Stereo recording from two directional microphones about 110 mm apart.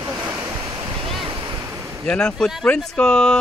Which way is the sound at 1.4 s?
30° right (ahead or behind).